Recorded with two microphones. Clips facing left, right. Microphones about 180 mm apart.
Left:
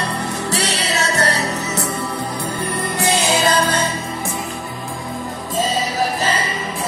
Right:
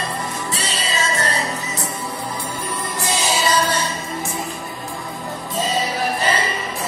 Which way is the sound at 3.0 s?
60° left (ahead or behind).